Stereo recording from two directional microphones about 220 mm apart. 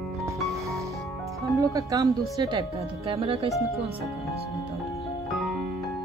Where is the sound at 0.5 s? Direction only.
15° right (ahead or behind).